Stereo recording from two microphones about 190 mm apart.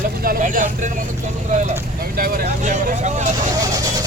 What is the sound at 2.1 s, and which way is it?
Vehicle, 50° right (ahead or behind).